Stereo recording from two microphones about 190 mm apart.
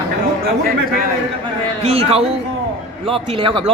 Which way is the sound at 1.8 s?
30° right (ahead or behind).